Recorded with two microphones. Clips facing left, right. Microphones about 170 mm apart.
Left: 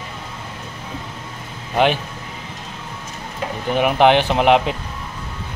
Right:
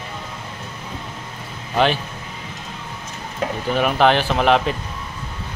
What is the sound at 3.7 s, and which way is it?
Speech, 15° left (ahead or behind).